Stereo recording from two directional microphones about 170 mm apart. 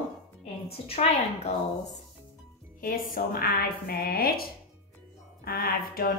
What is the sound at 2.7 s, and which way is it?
A woman's voice, 55° left (ahead or behind).